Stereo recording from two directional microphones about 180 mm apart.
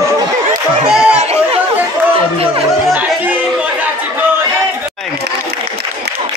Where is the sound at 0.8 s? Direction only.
5° right (ahead or behind).